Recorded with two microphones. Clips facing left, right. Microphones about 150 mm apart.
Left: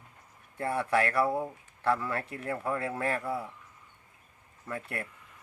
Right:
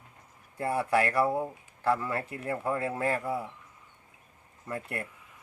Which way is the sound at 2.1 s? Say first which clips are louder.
Right 1 dB; 20° right (ahead or behind).